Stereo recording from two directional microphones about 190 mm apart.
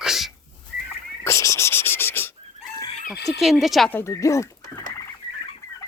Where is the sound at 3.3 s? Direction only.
Centre (ahead or behind); by 4.5 s 15° left (ahead or behind).